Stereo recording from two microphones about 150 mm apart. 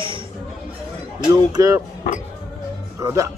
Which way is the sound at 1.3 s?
25° right (ahead or behind).